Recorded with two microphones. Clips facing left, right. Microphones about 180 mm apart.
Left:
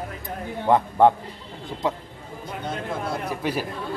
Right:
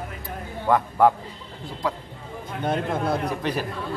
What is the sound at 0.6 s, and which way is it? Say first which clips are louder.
A man's voice: left 1 dB; 25° left (ahead or behind).